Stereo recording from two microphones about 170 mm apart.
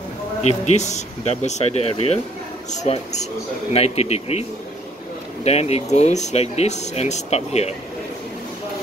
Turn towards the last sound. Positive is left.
turn(degrees=40)  # may be behind; listen again after turning